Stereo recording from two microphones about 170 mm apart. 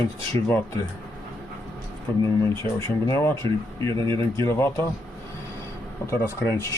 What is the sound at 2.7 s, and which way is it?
Speech, 15° left (ahead or behind).